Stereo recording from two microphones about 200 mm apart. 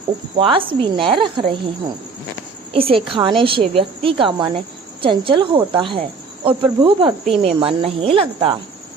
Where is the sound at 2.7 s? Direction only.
25° right (ahead or behind).